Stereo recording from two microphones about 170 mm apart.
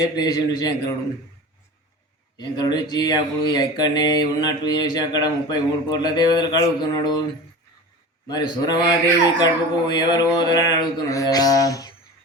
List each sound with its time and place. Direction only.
0.2 s speech: 20° left (ahead or behind)
2.4 s speech: 25° left (ahead or behind)
8.3 s speech: 25° left (ahead or behind)